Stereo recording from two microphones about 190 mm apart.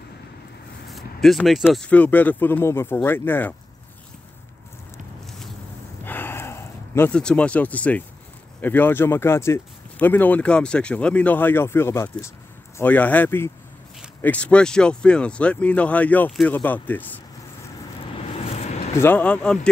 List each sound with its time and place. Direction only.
0.8 s a sound: centre (ahead or behind)
1.7 s speech: 5° left (ahead or behind)
6.0 s a sound: 10° left (ahead or behind)
8.5 s speech: 10° left (ahead or behind)
18.4 s vehicle: 35° left (ahead or behind)
18.9 s speech: 10° left (ahead or behind)